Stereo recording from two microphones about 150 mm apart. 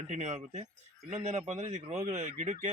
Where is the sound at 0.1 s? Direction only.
50° right (ahead or behind).